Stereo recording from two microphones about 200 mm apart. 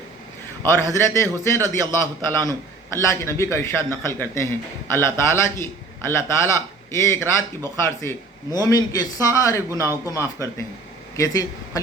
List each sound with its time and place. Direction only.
0.6 s a man's voice: 10° left (ahead or behind)